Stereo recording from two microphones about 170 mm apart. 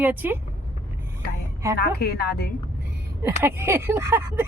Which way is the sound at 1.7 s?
65° left (ahead or behind).